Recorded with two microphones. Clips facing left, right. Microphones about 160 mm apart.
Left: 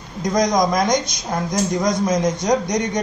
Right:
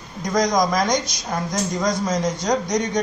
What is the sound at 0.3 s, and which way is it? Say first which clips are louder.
A man's voice: left 2 dB; 20° left (ahead or behind).